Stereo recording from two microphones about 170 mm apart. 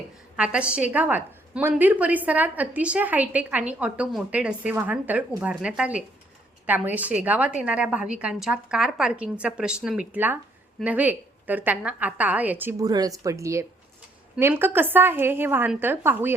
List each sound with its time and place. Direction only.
0.3 s a woman's voice: 5° right (ahead or behind)
12.8 s a woman's voice: 20° right (ahead or behind)